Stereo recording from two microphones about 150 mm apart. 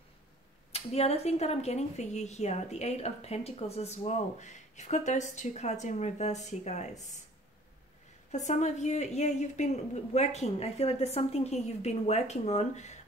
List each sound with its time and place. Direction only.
0.7 s speech: 45° left (ahead or behind)
8.3 s speech: 50° left (ahead or behind)